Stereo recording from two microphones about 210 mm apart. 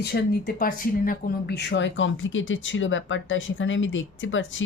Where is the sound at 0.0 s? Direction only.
50° left (ahead or behind).